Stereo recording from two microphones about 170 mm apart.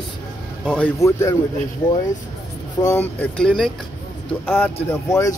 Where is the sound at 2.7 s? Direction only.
15° left (ahead or behind).